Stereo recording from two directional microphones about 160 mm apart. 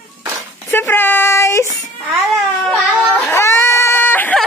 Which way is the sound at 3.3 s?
15° left (ahead or behind).